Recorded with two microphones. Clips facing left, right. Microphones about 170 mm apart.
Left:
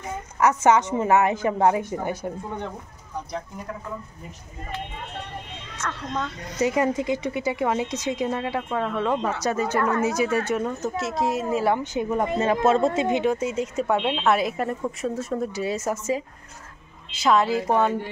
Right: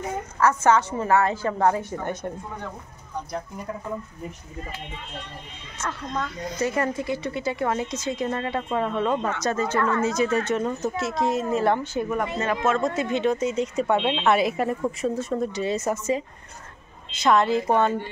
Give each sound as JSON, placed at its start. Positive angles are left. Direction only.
{"t": 0.4, "sound": "speech", "side_deg": 15}
{"t": 5.8, "sound": "a woman's voice", "side_deg": -5}
{"t": 6.6, "sound": "speech", "side_deg": 15}
{"t": 11.8, "sound": "speech", "side_deg": 15}
{"t": 12.5, "sound": "a man's voice", "side_deg": 30}
{"t": 13.1, "sound": "speech", "side_deg": 10}